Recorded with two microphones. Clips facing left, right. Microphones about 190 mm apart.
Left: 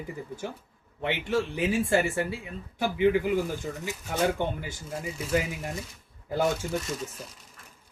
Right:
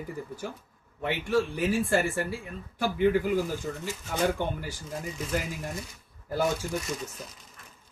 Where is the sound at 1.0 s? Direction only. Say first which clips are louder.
Right 1 dB; 20° left (ahead or behind).